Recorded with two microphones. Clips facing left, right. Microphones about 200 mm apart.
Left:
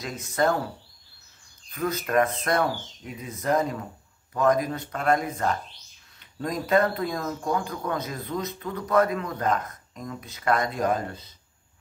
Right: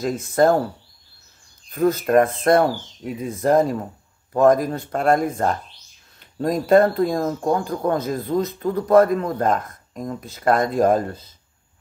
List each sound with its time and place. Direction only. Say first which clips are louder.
0.0 s a man's voice: right 8 dB; 50° right (ahead or behind)
1.7 s a man's voice: right 9 dB; 50° right (ahead or behind)